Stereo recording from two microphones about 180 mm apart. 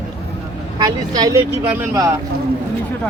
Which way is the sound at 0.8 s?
20° right (ahead or behind).